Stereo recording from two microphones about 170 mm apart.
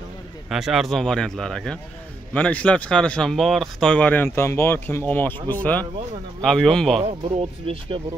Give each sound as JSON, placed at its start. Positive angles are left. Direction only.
{"t": 0.5, "sound": "speech", "side_deg": 0}
{"t": 7.0, "sound": "speech", "side_deg": -35}